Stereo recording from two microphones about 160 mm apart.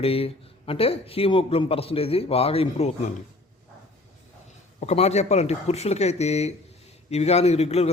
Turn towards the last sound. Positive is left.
turn(degrees=40)  # may be behind; listen again after turning